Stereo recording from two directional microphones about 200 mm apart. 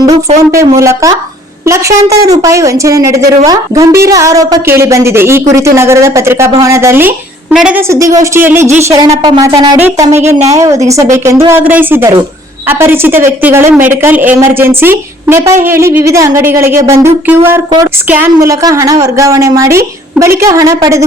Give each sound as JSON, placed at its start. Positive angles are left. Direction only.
{"t": 0.8, "sound": "a woman's voice", "side_deg": -15}
{"t": 9.7, "sound": "a woman's voice", "side_deg": -10}